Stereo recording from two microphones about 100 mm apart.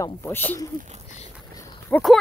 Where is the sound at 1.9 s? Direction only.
15° left (ahead or behind).